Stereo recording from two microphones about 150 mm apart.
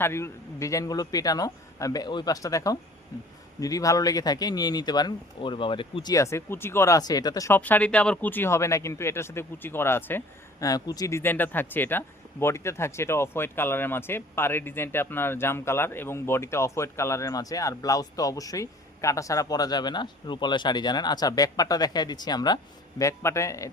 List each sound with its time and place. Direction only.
0.0 s speech: 15° left (ahead or behind)